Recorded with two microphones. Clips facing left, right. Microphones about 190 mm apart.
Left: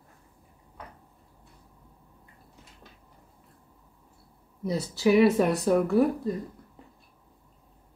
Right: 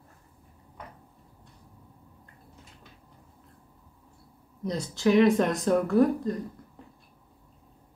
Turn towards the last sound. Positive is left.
turn(degrees=5)  # may be behind; listen again after turning